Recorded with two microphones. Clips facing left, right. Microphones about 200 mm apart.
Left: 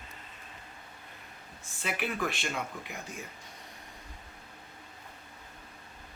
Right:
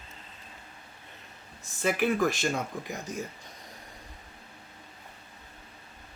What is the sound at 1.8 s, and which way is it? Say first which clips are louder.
Speech: right 8 dB; 45° right (ahead or behind).